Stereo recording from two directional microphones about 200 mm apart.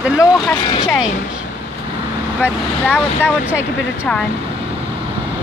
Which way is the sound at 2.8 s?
10° left (ahead or behind).